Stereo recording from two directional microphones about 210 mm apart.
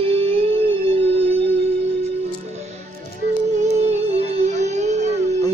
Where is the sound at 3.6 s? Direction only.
30° right (ahead or behind).